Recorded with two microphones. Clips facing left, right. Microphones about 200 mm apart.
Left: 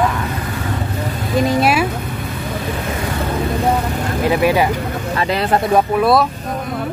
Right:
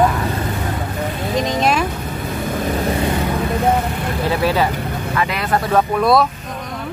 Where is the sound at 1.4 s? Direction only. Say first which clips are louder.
Left 3 dB; 10° left (ahead or behind).